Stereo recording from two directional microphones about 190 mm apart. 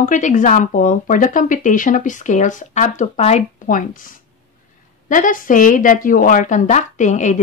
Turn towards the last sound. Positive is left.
turn(degrees=40)  # may be behind; listen again after turning